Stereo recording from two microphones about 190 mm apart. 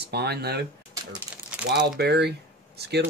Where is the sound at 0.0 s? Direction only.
60° right (ahead or behind).